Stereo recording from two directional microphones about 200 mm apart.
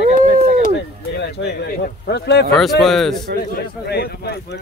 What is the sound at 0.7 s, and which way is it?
Speech, 60° left (ahead or behind).